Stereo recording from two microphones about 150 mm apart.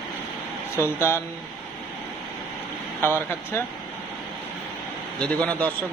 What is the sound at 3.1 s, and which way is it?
Speech, 15° left (ahead or behind).